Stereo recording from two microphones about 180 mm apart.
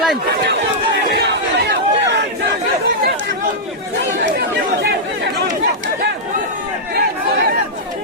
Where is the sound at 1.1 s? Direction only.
70° right (ahead or behind).